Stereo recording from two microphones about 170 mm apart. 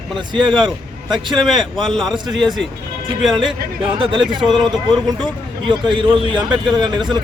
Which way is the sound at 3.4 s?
30° right (ahead or behind).